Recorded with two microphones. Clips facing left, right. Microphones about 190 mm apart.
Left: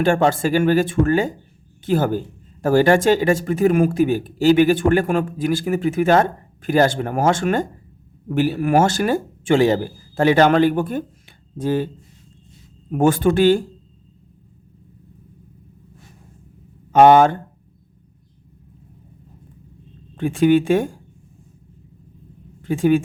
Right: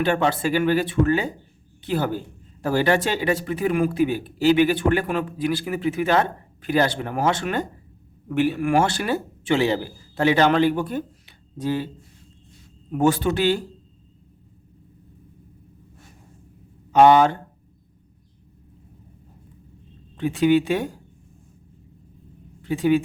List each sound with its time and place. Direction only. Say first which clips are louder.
0.0 s speech: left 4 dB; 45° left (ahead or behind)
12.9 s speech: left 4 dB; 50° left (ahead or behind)
16.9 s speech: left 3 dB; 50° left (ahead or behind)
20.1 s speech: left 3 dB; 50° left (ahead or behind)
22.6 s speech: left 3 dB; 50° left (ahead or behind)